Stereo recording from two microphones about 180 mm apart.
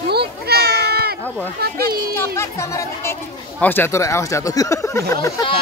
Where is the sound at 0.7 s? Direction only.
60° right (ahead or behind).